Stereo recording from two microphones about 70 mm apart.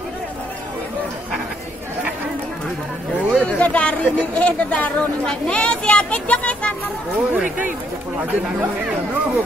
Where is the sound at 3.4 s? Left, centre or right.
Centre.